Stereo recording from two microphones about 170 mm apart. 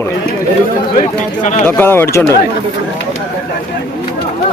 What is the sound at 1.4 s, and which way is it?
Speech, 50° left (ahead or behind).